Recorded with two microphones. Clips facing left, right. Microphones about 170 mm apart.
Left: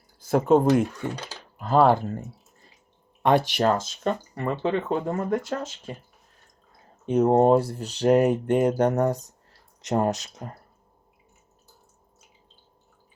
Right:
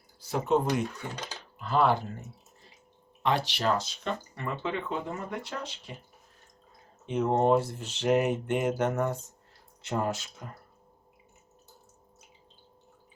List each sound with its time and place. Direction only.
0.2 s speech: 50° left (ahead or behind)
1.1 s speech: 10° left (ahead or behind)
1.5 s speech: 45° left (ahead or behind)
3.2 s speech: 50° left (ahead or behind)
7.0 s speech: 40° left (ahead or behind)